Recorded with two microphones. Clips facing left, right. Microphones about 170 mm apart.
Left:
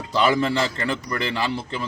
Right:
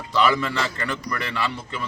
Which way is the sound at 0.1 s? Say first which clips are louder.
Left 1 dB; 30° left (ahead or behind).